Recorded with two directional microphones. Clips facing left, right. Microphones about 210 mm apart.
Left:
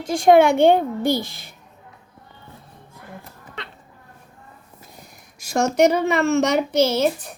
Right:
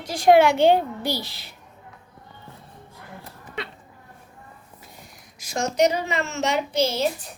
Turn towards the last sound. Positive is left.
turn(degrees=65)  # may be behind; listen again after turning